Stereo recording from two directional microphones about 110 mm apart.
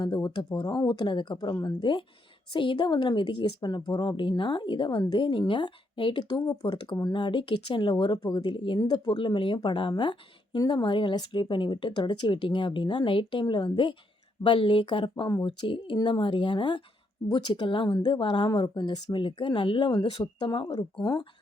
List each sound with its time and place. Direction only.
0.0 s speech: 45° left (ahead or behind)